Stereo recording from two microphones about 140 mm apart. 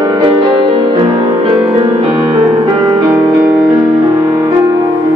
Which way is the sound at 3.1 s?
10° right (ahead or behind).